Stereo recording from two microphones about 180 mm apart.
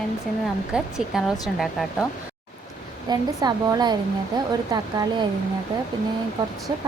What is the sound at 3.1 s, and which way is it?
A woman's voice, 20° right (ahead or behind).